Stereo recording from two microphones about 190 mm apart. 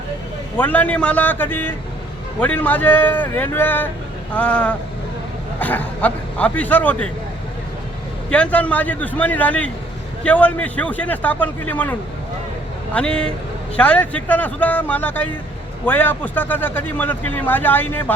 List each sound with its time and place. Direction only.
0.5 s a man's voice: 10° left (ahead or behind)
8.3 s a man's voice: 5° left (ahead or behind)